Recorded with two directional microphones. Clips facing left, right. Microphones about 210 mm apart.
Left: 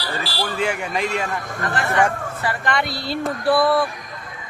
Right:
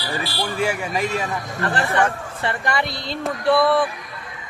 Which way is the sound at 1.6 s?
35° right (ahead or behind).